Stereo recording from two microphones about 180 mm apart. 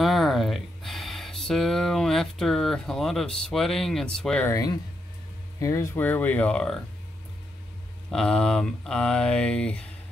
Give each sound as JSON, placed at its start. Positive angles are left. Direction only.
{"t": 0.0, "sound": "a sound", "side_deg": 0}
{"t": 4.5, "sound": "speech", "side_deg": 20}
{"t": 8.1, "sound": "speech", "side_deg": 5}